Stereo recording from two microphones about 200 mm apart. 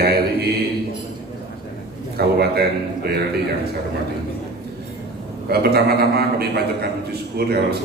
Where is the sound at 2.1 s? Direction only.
50° right (ahead or behind).